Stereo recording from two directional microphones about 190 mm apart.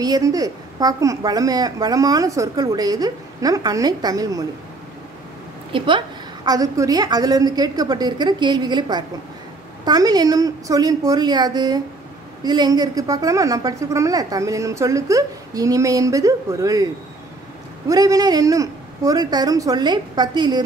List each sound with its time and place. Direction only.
0.0 s a woman's voice: 20° right (ahead or behind)
5.7 s a woman's voice: 25° right (ahead or behind)